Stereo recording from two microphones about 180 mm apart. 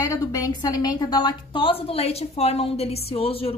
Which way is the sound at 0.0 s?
20° left (ahead or behind).